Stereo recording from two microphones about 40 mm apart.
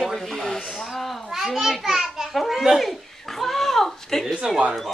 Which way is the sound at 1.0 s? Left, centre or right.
Centre.